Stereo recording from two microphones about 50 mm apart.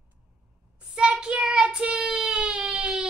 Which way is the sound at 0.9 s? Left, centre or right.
Centre.